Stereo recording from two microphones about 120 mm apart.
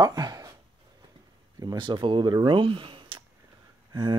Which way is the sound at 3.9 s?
35° right (ahead or behind).